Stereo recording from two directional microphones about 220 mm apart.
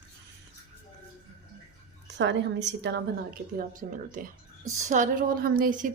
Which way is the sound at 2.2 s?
55° right (ahead or behind).